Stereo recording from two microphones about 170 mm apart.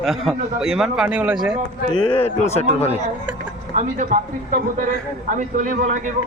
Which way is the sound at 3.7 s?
50° right (ahead or behind).